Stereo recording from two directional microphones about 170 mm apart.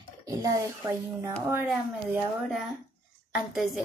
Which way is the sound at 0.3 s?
20° right (ahead or behind).